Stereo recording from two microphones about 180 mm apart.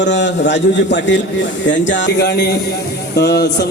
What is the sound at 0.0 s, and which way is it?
A man's voice, 80° left.